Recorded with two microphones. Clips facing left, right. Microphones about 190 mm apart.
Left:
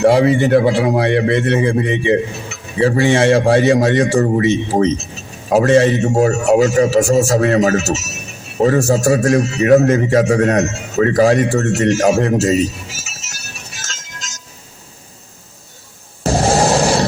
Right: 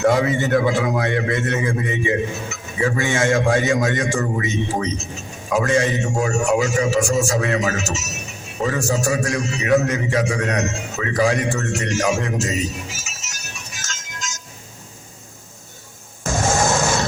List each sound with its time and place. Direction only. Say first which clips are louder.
0.0 s a man's voice: left 6 dB; 30° left (ahead or behind)
16.2 s music: left 6 dB; 35° left (ahead or behind)